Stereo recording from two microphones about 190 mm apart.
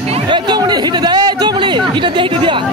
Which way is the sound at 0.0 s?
30° right (ahead or behind).